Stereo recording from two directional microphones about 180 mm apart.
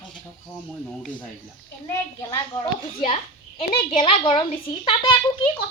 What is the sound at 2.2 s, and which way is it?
A child's voice, 20° left (ahead or behind).